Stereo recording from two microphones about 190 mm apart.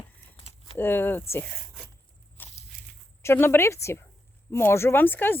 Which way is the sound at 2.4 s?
10° left (ahead or behind).